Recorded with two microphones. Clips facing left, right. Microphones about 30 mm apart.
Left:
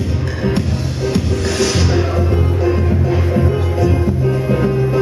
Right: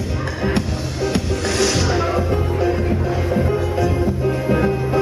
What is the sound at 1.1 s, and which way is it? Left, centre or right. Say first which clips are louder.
Music: left 3 dB; centre.